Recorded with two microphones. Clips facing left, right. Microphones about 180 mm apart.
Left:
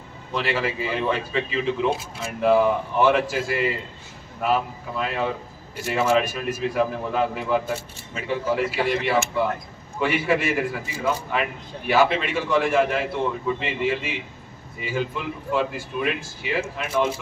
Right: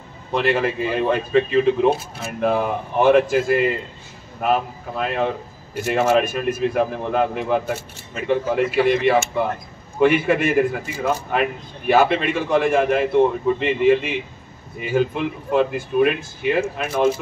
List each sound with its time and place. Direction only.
0.3 s a man's voice: 55° right (ahead or behind)